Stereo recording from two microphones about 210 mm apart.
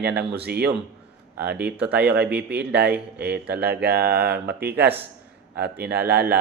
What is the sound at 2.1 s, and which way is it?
Speech, 50° right (ahead or behind).